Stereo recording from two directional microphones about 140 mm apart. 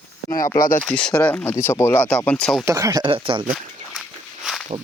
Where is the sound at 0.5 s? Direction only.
80° left.